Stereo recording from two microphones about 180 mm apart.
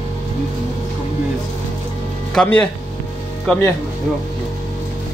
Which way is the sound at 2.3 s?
10° left (ahead or behind).